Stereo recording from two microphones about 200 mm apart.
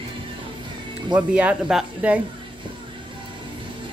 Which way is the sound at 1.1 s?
5° right (ahead or behind).